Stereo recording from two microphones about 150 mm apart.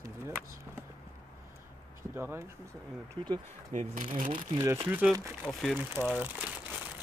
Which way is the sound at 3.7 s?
60° right (ahead or behind).